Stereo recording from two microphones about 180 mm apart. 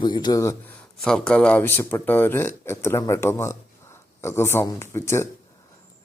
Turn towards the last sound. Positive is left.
turn(degrees=15)  # may be behind; listen again after turning